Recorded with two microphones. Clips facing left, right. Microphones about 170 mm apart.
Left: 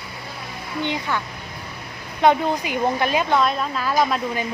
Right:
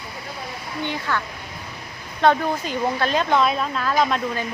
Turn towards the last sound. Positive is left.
turn(degrees=5)  # may be behind; listen again after turning